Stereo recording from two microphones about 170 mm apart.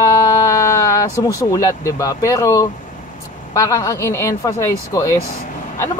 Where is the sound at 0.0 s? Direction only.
20° left (ahead or behind).